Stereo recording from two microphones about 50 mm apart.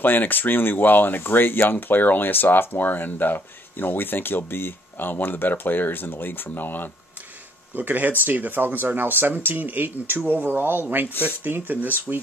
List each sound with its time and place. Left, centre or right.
0.0 s speech: left
7.7 s speech: right